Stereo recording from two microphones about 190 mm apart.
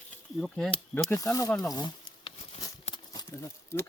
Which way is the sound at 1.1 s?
15° left (ahead or behind).